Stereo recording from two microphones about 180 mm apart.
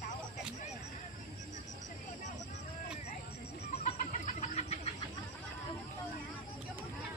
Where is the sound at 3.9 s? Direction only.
45° left (ahead or behind).